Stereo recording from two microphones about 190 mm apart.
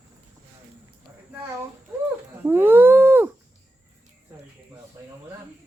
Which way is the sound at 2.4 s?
10° right (ahead or behind).